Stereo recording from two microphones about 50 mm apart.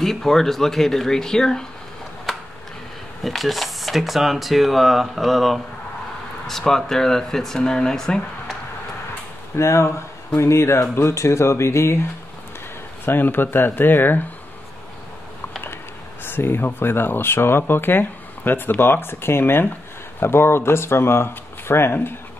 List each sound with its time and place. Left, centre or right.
0.0 s speech: centre
2.3 s a sound: centre
3.3 s speech: centre
6.9 s speech: centre
9.6 s speech: left
13.0 s speech: left
16.3 s speech: left